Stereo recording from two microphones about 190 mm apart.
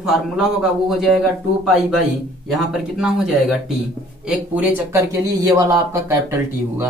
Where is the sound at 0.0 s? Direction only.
Centre (ahead or behind).